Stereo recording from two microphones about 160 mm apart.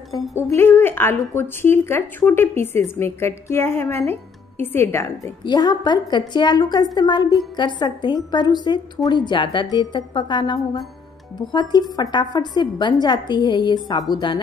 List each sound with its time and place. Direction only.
0.5 s a woman's voice: 15° left (ahead or behind)
5.4 s a woman's voice: 25° left (ahead or behind)
12.0 s a woman's voice: 25° left (ahead or behind)